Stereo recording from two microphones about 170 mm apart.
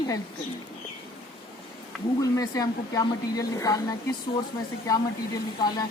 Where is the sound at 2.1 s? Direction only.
20° left (ahead or behind).